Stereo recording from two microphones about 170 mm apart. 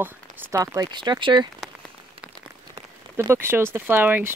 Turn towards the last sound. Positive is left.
turn(degrees=-10)  # may be behind; listen again after turning